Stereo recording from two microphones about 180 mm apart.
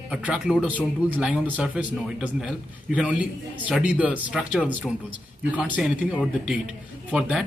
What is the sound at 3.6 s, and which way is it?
Speech, 10° right (ahead or behind).